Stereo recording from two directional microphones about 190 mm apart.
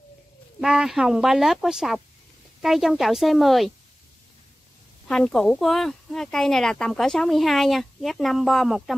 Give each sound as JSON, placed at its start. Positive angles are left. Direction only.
{"t": 0.6, "sound": "speech", "side_deg": -5}
{"t": 5.0, "sound": "speech", "side_deg": 5}